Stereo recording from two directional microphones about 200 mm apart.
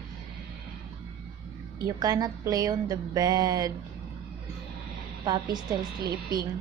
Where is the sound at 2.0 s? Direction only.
20° right (ahead or behind).